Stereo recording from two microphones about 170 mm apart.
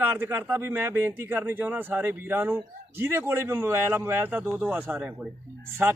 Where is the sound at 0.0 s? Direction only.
10° right (ahead or behind).